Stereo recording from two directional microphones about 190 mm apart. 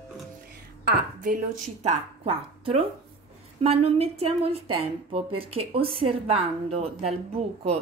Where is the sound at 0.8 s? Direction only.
45° right (ahead or behind).